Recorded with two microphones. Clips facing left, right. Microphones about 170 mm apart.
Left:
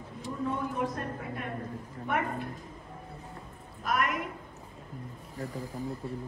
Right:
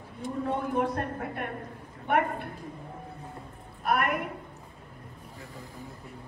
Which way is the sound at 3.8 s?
60° right (ahead or behind).